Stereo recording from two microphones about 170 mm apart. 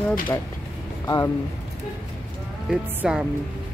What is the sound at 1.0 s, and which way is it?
Speech, 20° left (ahead or behind).